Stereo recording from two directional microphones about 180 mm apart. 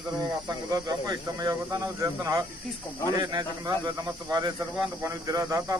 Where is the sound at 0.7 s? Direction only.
20° right (ahead or behind).